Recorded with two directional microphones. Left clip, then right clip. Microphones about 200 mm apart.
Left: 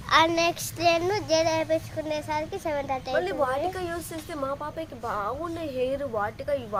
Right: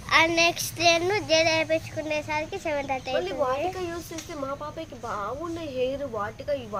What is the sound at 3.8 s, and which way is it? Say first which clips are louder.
Speech: left 1 dB; 20° left (ahead or behind).